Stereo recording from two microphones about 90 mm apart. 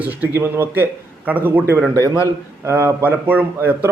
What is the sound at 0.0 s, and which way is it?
A man's voice, 20° right (ahead or behind).